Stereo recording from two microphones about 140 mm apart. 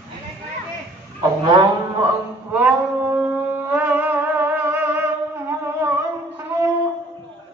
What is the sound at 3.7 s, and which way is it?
Music, 15° right (ahead or behind).